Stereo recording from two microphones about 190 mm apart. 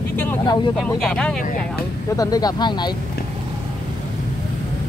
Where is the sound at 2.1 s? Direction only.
20° left (ahead or behind).